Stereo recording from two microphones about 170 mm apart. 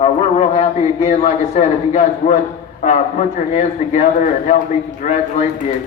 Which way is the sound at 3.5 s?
45° left (ahead or behind).